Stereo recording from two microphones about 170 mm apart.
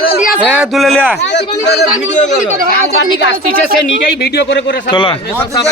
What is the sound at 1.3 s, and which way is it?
Speech, 90° left.